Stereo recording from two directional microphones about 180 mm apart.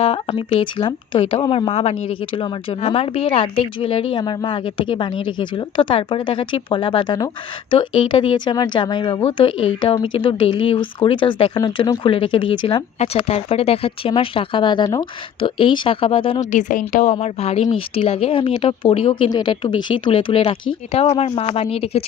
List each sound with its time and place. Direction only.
0.0 s speech: 30° left (ahead or behind)
16.4 s a woman's voice: 40° left (ahead or behind)